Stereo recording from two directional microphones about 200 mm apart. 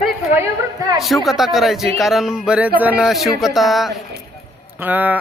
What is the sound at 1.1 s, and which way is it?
Speech, centre (ahead or behind).